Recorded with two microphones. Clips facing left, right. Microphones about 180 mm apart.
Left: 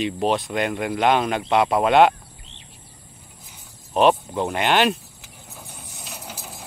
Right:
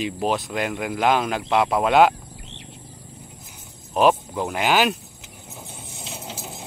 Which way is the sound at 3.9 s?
5° right (ahead or behind).